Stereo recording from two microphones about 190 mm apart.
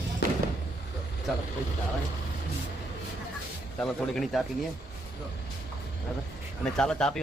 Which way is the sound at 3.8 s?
Centre (ahead or behind).